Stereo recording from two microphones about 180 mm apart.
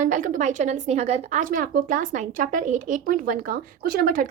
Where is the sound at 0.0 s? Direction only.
45° right (ahead or behind).